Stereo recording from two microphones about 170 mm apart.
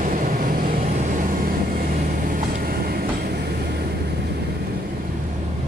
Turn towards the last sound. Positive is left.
turn(degrees=-70)  # may be behind; listen again after turning